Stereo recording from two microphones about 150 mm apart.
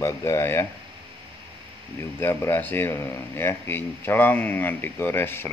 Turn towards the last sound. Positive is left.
turn(degrees=15)  # may be behind; listen again after turning